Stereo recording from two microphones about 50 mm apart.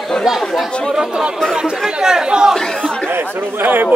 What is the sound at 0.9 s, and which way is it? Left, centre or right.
Speech, centre.